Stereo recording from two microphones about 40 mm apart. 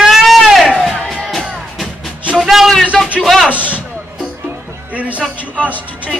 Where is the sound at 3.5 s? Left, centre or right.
Right.